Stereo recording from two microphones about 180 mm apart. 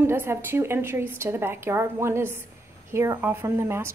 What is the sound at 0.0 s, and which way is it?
A woman's voice, 10° right (ahead or behind).